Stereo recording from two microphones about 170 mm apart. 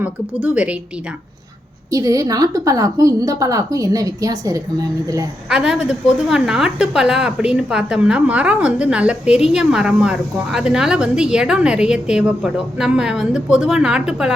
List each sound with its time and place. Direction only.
0.0 s a woman's voice: 5° right (ahead or behind)
1.9 s a woman's voice: 20° right (ahead or behind)
5.5 s a woman's voice: 5° right (ahead or behind)